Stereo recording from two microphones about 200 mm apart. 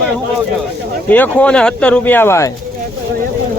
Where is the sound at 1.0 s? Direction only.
10° left (ahead or behind).